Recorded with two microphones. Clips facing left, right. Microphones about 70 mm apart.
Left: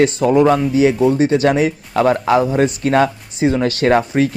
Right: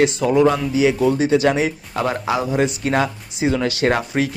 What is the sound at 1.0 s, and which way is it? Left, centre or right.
Speech, left.